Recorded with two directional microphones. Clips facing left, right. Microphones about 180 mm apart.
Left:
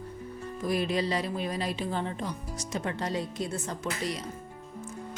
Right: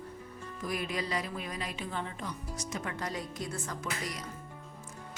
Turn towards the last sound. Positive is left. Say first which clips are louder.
# left 5 dB
turn(degrees=30)  # may be behind; listen again after turning